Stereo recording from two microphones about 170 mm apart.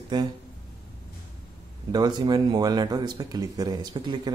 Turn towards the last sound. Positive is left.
turn(degrees=-25)  # may be behind; listen again after turning